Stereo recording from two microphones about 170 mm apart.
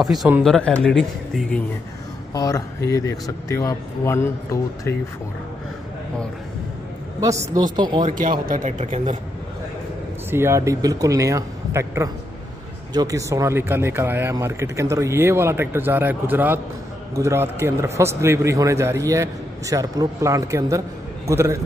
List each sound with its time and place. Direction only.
0.0 s speech: centre (ahead or behind)
2.3 s speech: 20° left (ahead or behind)
7.2 s speech: 20° right (ahead or behind)
8.0 s speech: 55° right (ahead or behind)
10.3 s speech: 15° right (ahead or behind)